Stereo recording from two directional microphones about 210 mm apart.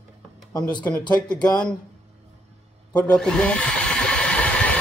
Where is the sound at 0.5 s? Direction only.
15° left (ahead or behind).